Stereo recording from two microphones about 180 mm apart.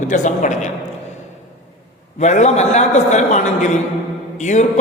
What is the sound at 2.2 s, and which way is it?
A man's voice, 40° left (ahead or behind).